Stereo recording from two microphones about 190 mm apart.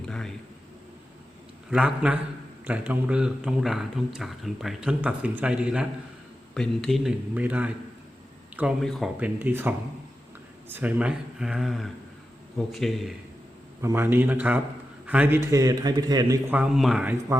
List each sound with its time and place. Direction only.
0.1 s speech: 5° left (ahead or behind)
1.7 s a man's voice: 5° right (ahead or behind)
13.8 s a man's voice: 10° right (ahead or behind)
16.6 s a man's voice: centre (ahead or behind)